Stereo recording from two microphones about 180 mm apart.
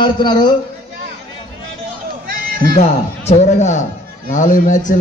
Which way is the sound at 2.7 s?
40° left (ahead or behind).